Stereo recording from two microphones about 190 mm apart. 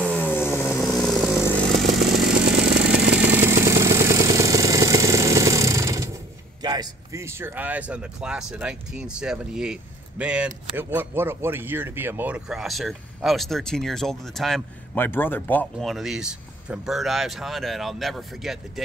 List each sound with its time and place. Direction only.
0.7 s chainsaw: centre (ahead or behind); by 6.1 s 15° right (ahead or behind)
6.6 s speech: 20° right (ahead or behind); by 18.6 s centre (ahead or behind)